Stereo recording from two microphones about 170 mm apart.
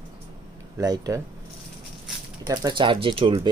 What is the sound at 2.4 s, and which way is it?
Speech, 20° right (ahead or behind).